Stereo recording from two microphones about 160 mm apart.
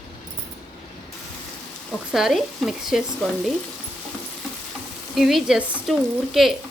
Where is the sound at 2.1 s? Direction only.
Centre (ahead or behind).